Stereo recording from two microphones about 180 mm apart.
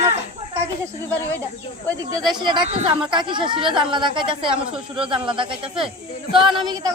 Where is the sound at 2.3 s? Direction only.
25° right (ahead or behind).